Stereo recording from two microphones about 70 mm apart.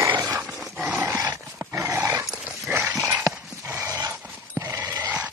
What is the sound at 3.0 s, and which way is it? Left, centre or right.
Horse, right.